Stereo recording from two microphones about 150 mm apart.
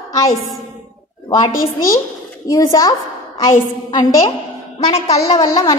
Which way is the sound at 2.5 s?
25° left (ahead or behind).